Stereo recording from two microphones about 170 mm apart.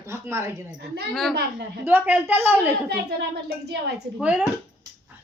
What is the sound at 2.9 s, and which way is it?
Speech, 70° right (ahead or behind).